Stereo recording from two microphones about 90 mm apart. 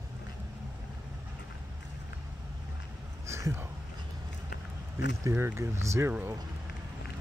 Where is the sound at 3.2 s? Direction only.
30° right (ahead or behind).